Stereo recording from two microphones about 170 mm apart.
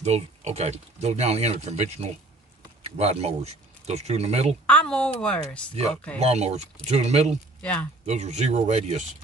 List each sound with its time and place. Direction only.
0.0 s speech: 40° right (ahead or behind)
4.6 s speech: 5° left (ahead or behind)
6.1 s speech: 40° right (ahead or behind)